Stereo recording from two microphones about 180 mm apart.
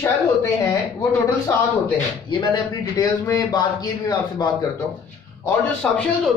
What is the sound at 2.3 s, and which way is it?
A man's voice, 25° left (ahead or behind).